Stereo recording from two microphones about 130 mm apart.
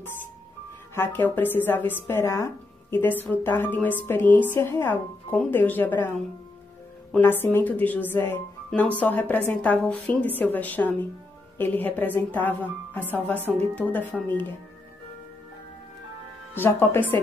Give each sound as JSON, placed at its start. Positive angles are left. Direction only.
{"t": 0.9, "sound": "speech", "side_deg": 15}
{"t": 7.2, "sound": "speech", "side_deg": 15}
{"t": 13.5, "sound": "speech", "side_deg": 0}
{"t": 16.5, "sound": "speech", "side_deg": 15}